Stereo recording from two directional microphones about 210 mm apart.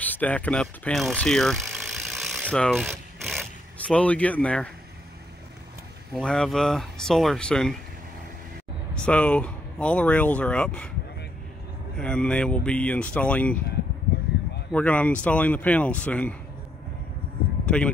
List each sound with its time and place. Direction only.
0.0 s speech: 10° left (ahead or behind)
6.1 s speech: 5° left (ahead or behind)
8.9 s speech: 5° left (ahead or behind)
12.0 s speech: 5° left (ahead or behind)
14.7 s speech: 5° left (ahead or behind)
17.6 s speech: 5° left (ahead or behind)